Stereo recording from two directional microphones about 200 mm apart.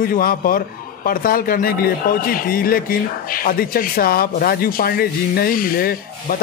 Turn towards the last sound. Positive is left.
turn(degrees=45)  # may be behind; listen again after turning